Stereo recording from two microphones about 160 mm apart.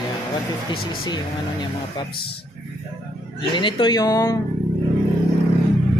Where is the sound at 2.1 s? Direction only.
75° left (ahead or behind).